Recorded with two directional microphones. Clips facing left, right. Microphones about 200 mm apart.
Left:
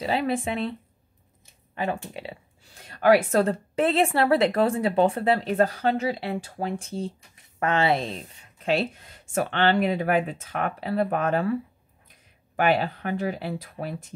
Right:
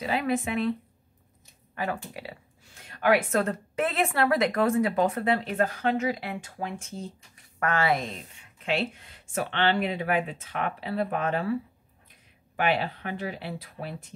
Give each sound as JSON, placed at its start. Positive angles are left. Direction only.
{"t": 0.0, "sound": "speech", "side_deg": 30}
{"t": 1.8, "sound": "speech", "side_deg": 25}
{"t": 2.9, "sound": "a woman's voice", "side_deg": 40}
{"t": 12.5, "sound": "speech", "side_deg": 45}